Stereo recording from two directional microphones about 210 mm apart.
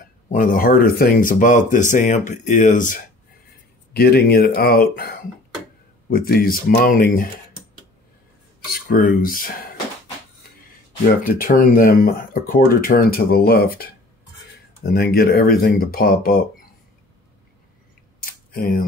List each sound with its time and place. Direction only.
0.3 s speech: 40° left (ahead or behind)
8.8 s speech: 40° left (ahead or behind)
11.2 s speech: 40° left (ahead or behind)
18.2 s a sound: 40° left (ahead or behind)